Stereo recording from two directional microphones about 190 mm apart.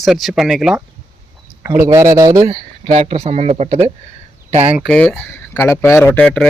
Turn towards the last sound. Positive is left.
turn(degrees=5)  # may be behind; listen again after turning